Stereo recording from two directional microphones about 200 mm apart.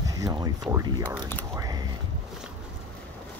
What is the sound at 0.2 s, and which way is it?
Speech, 15° right (ahead or behind).